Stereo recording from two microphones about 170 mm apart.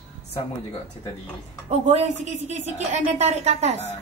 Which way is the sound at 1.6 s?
45° right (ahead or behind).